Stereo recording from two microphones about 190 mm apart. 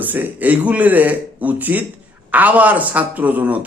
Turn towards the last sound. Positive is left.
turn(degrees=-10)  # may be behind; listen again after turning